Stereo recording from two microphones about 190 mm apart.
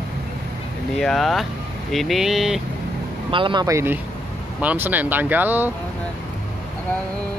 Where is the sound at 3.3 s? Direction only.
25° right (ahead or behind); by 5.7 s 10° right (ahead or behind).